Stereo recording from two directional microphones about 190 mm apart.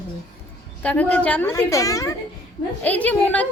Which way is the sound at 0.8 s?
10° left (ahead or behind).